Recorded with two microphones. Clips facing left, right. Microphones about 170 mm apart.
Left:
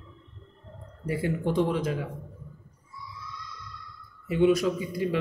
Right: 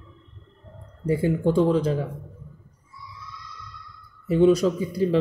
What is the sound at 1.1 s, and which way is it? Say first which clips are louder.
Speech: right 6 dB; 30° right (ahead or behind).